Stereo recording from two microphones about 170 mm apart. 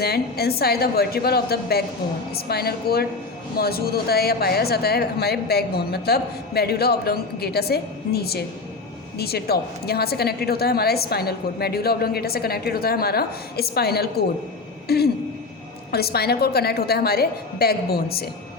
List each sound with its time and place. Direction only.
0.0 s a woman's voice: 65° left (ahead or behind)
14.8 s throat clearing: 70° left (ahead or behind)
15.9 s a woman's voice: 70° left (ahead or behind)